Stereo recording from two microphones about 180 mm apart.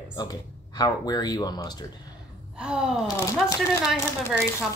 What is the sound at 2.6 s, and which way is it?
Speech, 5° right (ahead or behind).